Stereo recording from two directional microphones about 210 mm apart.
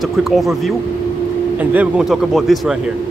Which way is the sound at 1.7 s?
5° right (ahead or behind).